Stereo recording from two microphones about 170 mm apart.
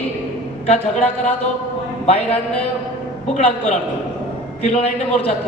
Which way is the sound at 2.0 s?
35° left (ahead or behind).